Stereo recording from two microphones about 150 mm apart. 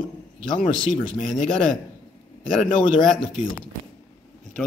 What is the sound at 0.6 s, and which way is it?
A man's voice, centre (ahead or behind).